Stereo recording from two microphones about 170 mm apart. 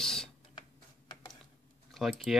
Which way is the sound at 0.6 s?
25° left (ahead or behind).